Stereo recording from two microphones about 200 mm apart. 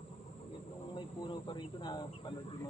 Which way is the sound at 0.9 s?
25° left (ahead or behind).